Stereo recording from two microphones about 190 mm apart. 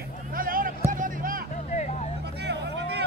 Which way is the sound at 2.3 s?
60° right (ahead or behind).